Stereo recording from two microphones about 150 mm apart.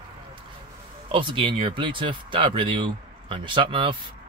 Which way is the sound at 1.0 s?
35° right (ahead or behind).